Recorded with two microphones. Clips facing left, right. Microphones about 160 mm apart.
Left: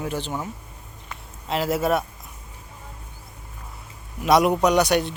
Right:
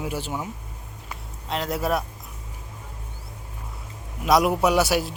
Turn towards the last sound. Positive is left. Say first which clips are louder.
# left 2 dB
turn(degrees=-5)  # may be behind; listen again after turning